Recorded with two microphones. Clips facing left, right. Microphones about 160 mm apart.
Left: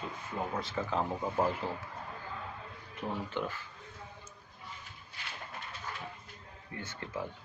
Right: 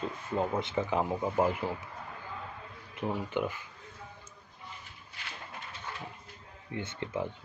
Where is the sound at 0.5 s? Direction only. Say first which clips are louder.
Right 4 dB; 20° right (ahead or behind).